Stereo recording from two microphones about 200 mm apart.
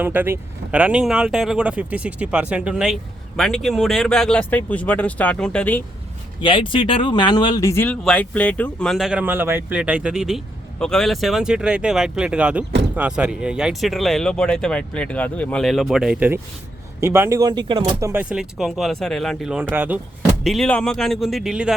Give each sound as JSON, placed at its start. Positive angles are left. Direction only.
{"t": 0.0, "sound": "speech", "side_deg": -10}
{"t": 6.4, "sound": "speech", "side_deg": 25}
{"t": 18.1, "sound": "speech", "side_deg": -5}